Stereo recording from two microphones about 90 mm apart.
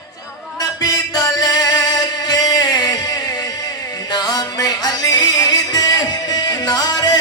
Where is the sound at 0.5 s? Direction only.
45° left (ahead or behind).